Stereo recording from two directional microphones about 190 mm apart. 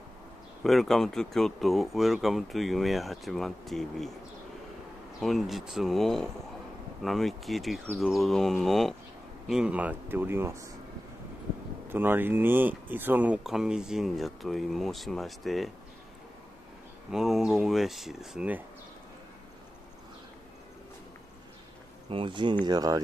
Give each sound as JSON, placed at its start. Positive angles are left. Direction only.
{"t": 0.7, "sound": "speech", "side_deg": 0}
{"t": 5.2, "sound": "speech", "side_deg": 0}
{"t": 11.9, "sound": "speech", "side_deg": -10}
{"t": 17.1, "sound": "speech", "side_deg": 0}
{"t": 22.1, "sound": "speech", "side_deg": -25}